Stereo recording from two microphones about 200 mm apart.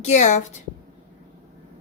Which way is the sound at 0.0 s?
35° left (ahead or behind).